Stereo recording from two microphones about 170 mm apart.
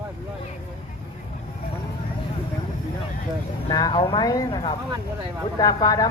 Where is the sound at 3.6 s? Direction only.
25° left (ahead or behind).